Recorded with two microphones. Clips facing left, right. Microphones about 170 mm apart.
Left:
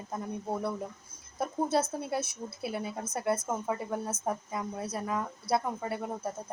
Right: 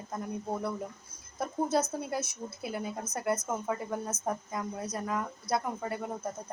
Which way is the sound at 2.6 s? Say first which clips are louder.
Left 1 dB; 5° left (ahead or behind).